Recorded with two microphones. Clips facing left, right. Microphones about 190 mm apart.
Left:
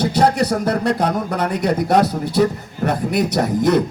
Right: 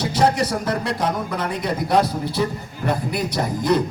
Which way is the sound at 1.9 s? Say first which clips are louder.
Left 3 dB; 50° left (ahead or behind).